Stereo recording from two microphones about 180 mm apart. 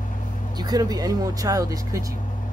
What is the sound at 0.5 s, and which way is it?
Speech, 20° right (ahead or behind).